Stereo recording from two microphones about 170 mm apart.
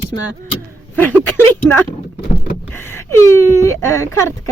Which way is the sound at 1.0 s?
10° left (ahead or behind).